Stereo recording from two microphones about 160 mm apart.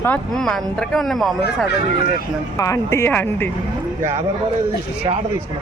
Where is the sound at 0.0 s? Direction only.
5° left (ahead or behind).